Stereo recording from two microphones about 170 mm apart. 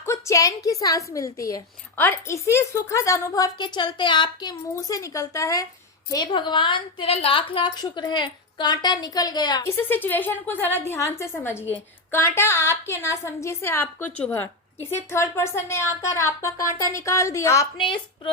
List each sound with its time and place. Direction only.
0.0 s a woman's voice: 15° left (ahead or behind)
9.9 s a woman's voice: 10° left (ahead or behind)
17.7 s a woman's voice: 30° left (ahead or behind)